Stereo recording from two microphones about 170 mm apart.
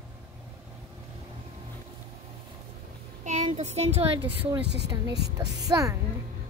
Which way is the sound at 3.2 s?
45° right (ahead or behind).